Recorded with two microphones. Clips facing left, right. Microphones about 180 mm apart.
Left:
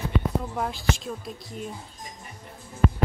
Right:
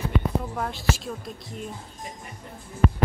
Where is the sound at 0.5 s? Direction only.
Centre (ahead or behind).